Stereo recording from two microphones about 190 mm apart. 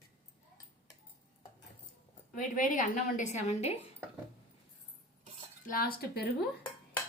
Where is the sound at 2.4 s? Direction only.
45° left (ahead or behind).